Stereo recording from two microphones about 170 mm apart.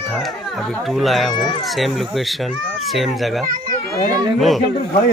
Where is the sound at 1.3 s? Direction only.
25° left (ahead or behind).